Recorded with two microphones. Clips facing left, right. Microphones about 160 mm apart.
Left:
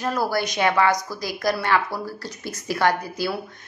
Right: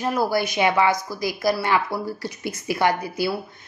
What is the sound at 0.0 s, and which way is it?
A woman's voice, 15° right (ahead or behind).